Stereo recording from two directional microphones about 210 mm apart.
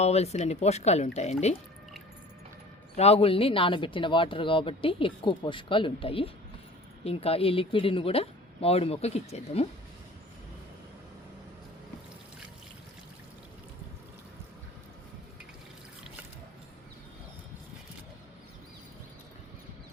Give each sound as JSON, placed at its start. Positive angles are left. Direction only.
{"t": 0.0, "sound": "speech", "side_deg": 30}
{"t": 2.9, "sound": "speech", "side_deg": 30}